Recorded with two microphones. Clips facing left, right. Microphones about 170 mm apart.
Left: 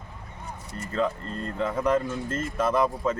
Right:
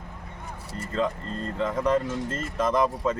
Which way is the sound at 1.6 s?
10° left (ahead or behind).